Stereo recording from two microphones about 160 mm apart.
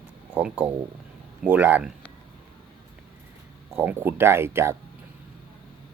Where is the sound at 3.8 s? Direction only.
15° right (ahead or behind).